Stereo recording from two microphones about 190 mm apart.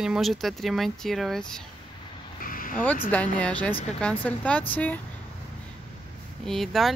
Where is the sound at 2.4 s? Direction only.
50° left (ahead or behind).